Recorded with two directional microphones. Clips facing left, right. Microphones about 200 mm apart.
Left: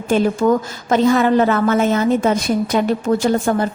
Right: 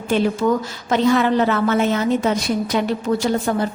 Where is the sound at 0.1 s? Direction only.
50° left (ahead or behind).